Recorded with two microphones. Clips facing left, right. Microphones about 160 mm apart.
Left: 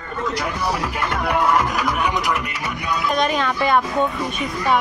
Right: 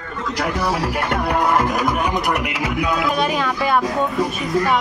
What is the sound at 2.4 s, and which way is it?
Music, 90° right.